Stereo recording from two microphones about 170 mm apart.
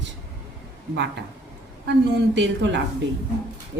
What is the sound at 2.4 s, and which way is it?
Speech, 90° right.